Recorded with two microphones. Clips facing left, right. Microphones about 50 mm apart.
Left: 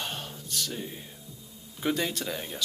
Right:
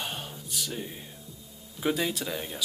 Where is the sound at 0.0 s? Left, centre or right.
Centre.